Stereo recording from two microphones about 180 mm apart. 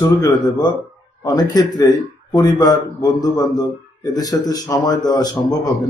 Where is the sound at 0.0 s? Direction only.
20° left (ahead or behind).